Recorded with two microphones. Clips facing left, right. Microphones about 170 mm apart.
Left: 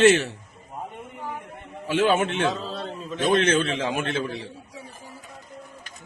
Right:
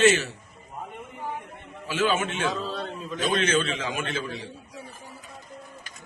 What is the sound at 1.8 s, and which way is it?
Speech, 60° left (ahead or behind).